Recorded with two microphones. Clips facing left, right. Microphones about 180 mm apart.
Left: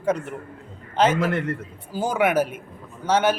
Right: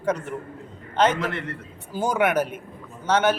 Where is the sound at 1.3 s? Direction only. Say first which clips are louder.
Left 7 dB; 45° left (ahead or behind).